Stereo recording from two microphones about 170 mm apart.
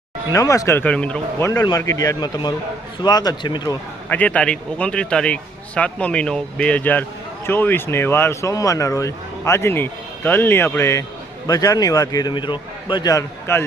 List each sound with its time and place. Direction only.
0.3 s speech: 20° left (ahead or behind)
1.5 s a man's voice: 20° left (ahead or behind)
4.1 s a man's voice: 10° left (ahead or behind)